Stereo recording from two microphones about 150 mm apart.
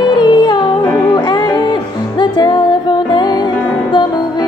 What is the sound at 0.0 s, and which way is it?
Music, 30° left (ahead or behind).